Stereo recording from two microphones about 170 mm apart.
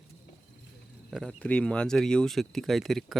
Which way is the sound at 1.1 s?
Centre (ahead or behind).